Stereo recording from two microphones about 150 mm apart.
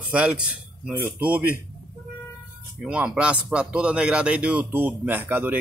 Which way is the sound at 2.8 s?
5° right (ahead or behind).